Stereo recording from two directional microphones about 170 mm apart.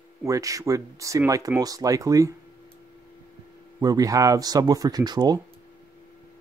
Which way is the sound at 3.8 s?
20° right (ahead or behind).